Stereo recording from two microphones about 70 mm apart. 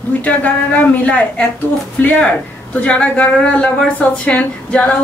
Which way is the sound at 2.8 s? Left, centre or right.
Centre.